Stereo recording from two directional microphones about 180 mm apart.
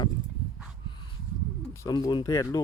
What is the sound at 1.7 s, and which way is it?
Speech, 20° left (ahead or behind).